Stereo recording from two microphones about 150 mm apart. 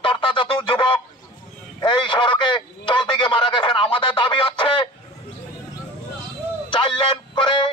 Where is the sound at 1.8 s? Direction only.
30° left (ahead or behind).